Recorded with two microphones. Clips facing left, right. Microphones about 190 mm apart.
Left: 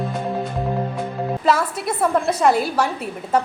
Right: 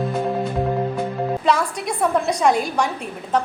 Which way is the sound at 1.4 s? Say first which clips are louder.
Left 3 dB; 5° left (ahead or behind).